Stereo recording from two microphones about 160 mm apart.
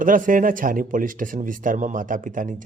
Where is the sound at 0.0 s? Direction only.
55° right (ahead or behind).